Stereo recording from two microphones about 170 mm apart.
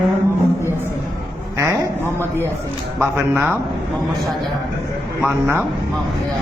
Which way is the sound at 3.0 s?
10° right (ahead or behind).